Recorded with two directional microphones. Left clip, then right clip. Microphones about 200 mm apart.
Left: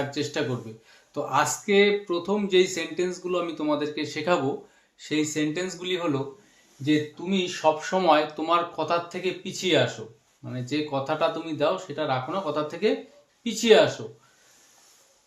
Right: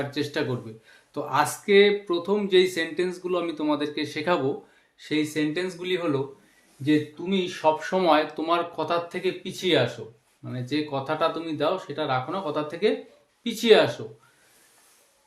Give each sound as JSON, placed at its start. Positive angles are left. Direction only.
{"t": 0.1, "sound": "speech", "side_deg": -15}